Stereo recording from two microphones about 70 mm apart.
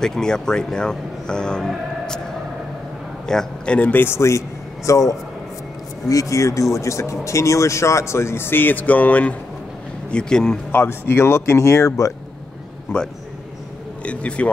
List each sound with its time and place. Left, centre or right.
0.0 s speech: centre
1.7 s music: centre
3.3 s a man's voice: centre; by 4.4 s left
4.8 s speech: left; by 10.6 s centre
10.7 s speech: left
14.0 s speech: centre